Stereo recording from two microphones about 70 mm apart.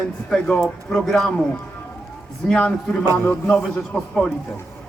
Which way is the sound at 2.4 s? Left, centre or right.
Centre.